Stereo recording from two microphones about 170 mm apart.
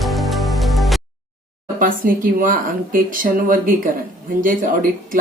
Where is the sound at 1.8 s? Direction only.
55° right (ahead or behind).